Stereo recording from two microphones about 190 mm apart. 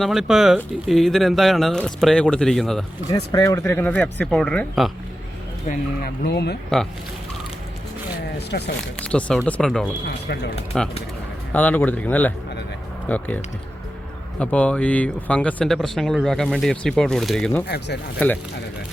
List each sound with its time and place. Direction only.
0.0 s speech: centre (ahead or behind)
3.1 s speech: 15° left (ahead or behind)
5.6 s speech: 55° left (ahead or behind)
8.4 s speech: 60° left (ahead or behind)
9.0 s speech: 5° left (ahead or behind)
17.7 s speech: 60° left (ahead or behind)